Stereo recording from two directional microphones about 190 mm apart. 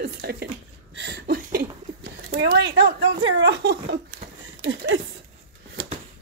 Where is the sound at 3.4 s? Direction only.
60° right (ahead or behind).